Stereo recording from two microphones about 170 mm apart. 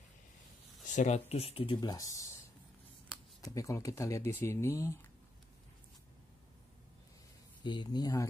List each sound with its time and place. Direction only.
0.8 s speech: 45° left (ahead or behind); by 2.3 s 20° left (ahead or behind)
3.3 s speech: 20° left (ahead or behind)
7.6 s speech: 25° left (ahead or behind)